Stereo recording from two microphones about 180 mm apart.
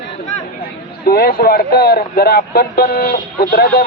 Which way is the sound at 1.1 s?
55° left (ahead or behind).